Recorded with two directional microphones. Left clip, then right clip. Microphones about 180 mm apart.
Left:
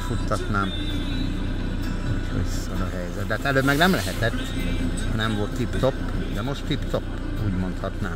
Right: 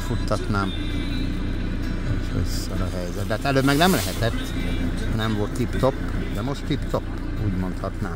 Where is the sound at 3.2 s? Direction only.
25° right (ahead or behind).